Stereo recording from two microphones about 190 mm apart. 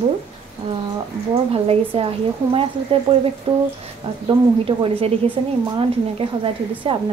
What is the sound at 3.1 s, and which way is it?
A woman's voice, 30° right (ahead or behind).